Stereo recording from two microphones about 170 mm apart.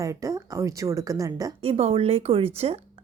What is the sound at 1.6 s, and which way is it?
Speech, 35° right (ahead or behind).